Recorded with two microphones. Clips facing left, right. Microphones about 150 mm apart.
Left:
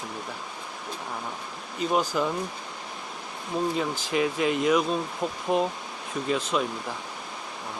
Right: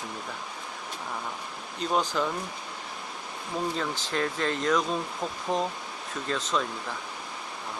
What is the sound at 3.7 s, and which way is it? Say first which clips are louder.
Speech: left 4 dB; 10° left (ahead or behind).